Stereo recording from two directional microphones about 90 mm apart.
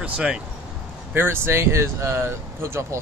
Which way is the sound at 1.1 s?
25° right (ahead or behind).